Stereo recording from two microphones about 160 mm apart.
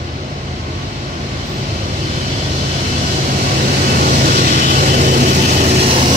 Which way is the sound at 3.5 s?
60° right (ahead or behind).